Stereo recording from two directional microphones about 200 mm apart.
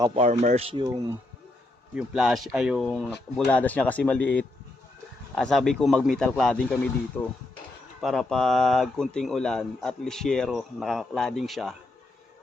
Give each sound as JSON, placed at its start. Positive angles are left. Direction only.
{"t": 0.2, "sound": "speech", "side_deg": -35}
{"t": 0.7, "sound": "speech", "side_deg": -25}
{"t": 2.0, "sound": "speech", "side_deg": 0}